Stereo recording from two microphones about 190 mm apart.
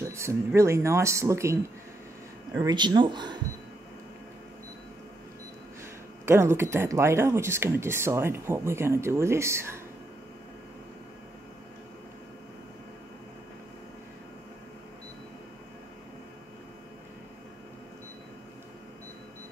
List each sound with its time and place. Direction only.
0.0 s speech: 15° right (ahead or behind)
6.2 s speech: 15° right (ahead or behind)